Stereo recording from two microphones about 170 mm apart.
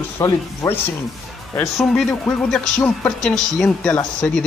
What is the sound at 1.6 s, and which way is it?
A man's voice, centre (ahead or behind).